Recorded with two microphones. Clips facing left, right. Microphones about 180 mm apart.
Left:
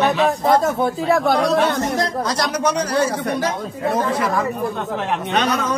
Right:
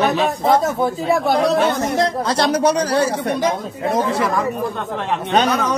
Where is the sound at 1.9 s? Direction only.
30° right (ahead or behind).